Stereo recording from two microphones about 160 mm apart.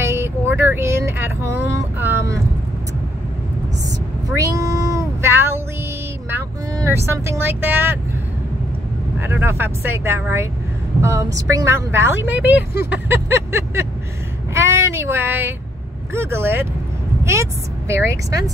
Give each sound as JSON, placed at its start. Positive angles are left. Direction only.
{"t": 0.0, "sound": "vehicle", "side_deg": -15}
{"t": 4.4, "sound": "a sound", "side_deg": -20}
{"t": 6.3, "sound": "vehicle", "side_deg": -20}
{"t": 9.2, "sound": "a woman's voice", "side_deg": -15}
{"t": 14.5, "sound": "vehicle", "side_deg": -15}
{"t": 16.1, "sound": "a woman's voice", "side_deg": -15}